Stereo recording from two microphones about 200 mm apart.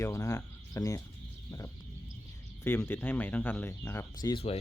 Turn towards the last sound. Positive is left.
turn(degrees=20)  # may be behind; listen again after turning